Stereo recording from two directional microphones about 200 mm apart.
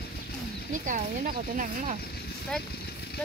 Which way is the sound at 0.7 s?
40° right (ahead or behind).